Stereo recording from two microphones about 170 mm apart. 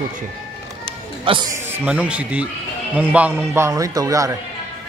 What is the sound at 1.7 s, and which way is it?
A man's voice, 10° right (ahead or behind).